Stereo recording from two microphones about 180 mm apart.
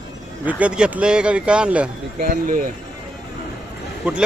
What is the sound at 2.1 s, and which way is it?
Speech, 50° right (ahead or behind).